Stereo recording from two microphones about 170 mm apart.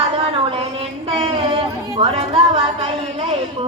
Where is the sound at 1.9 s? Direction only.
40° right (ahead or behind).